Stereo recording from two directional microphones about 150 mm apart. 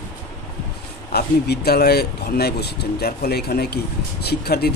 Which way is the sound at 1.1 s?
90° left.